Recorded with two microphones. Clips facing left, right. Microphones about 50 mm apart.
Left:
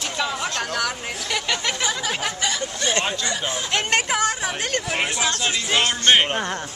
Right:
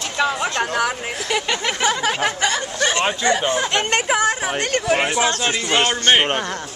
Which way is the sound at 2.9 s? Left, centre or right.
Right.